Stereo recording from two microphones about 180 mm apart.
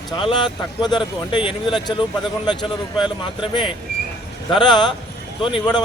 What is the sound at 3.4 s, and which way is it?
Speech, 25° left (ahead or behind).